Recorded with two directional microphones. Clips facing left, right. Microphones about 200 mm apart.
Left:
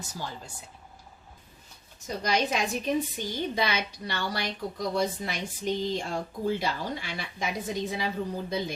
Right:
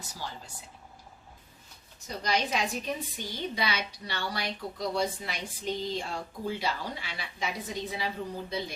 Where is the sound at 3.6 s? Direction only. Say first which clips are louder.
Left 3 dB; 45° left (ahead or behind).